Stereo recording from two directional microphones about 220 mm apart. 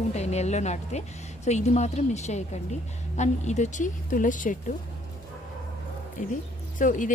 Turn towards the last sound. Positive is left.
turn(degrees=35)  # may be behind; listen again after turning